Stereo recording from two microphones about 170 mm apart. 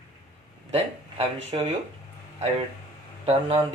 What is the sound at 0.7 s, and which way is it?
Speech, 35° right (ahead or behind).